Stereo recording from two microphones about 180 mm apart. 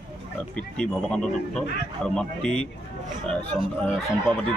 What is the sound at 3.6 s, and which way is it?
Speech, 30° right (ahead or behind).